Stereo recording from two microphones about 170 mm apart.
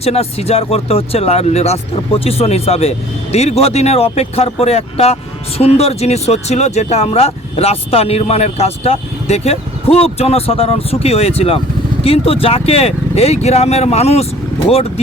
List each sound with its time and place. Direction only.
0.0 s speech: 35° left (ahead or behind)